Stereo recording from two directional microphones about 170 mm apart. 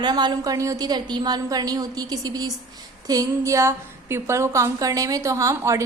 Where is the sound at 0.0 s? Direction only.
25° right (ahead or behind).